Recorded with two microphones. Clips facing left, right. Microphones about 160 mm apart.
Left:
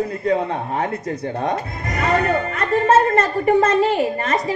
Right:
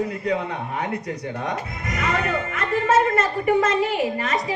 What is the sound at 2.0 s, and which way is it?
A woman's voice, 35° left (ahead or behind).